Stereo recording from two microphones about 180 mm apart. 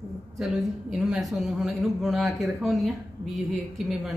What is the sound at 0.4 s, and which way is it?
A man's voice, centre (ahead or behind).